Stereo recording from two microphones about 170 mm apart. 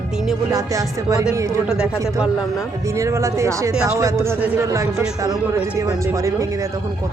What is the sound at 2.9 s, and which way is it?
Speech, 15° right (ahead or behind).